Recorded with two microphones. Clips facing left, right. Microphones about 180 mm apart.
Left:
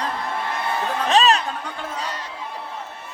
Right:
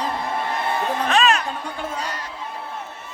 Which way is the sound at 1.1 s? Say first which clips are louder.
Left 2 dB; 35° left (ahead or behind).